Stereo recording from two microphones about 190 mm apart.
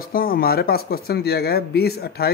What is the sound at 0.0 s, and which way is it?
Speech, 50° left (ahead or behind).